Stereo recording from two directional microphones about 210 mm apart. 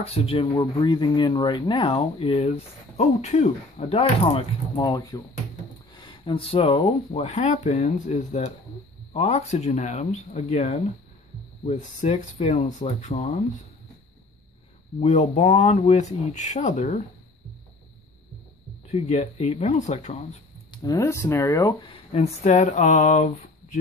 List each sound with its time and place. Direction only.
0.0 s speech: 25° left (ahead or behind)
4.7 s speech: 15° left (ahead or behind); by 13.3 s 35° left (ahead or behind)
15.0 s speech: 30° left (ahead or behind)
18.9 s speech: 30° left (ahead or behind)
20.7 s speech: 15° left (ahead or behind)
22.1 s speech: 30° left (ahead or behind)